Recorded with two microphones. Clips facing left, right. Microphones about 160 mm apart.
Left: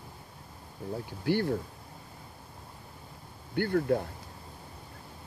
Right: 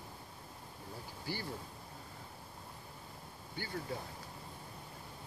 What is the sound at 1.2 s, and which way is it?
Speech, 65° left (ahead or behind).